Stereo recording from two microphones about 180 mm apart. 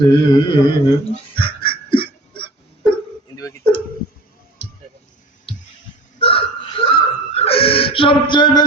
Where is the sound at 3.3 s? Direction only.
15° left (ahead or behind).